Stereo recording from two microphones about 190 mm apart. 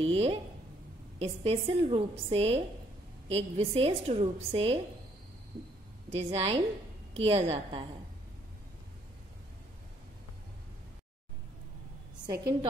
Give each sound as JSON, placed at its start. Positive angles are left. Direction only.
{"t": 0.0, "sound": "a woman's voice", "side_deg": -30}
{"t": 6.1, "sound": "a woman's voice", "side_deg": -30}